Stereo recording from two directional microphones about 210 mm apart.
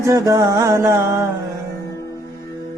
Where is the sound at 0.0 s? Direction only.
15° right (ahead or behind).